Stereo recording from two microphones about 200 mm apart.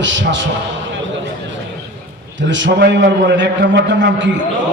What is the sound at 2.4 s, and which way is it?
A man's voice, 65° right (ahead or behind).